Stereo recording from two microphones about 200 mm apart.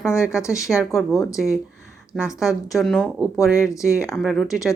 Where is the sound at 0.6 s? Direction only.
Centre (ahead or behind).